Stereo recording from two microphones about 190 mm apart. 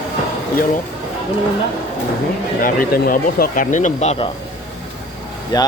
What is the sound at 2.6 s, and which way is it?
Speech, 50° left (ahead or behind).